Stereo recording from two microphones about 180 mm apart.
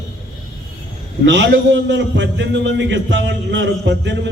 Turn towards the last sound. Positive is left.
turn(degrees=-80)